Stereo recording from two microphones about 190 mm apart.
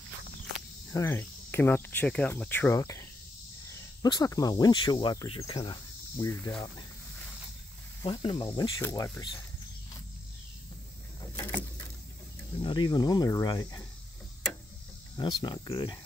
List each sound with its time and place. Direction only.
0.9 s speech: 15° left (ahead or behind)
8.0 s speech: 25° left (ahead or behind)
11.1 s vehicle: 15° left (ahead or behind)
12.5 s speech: 25° left (ahead or behind)
15.1 s speech: 20° left (ahead or behind)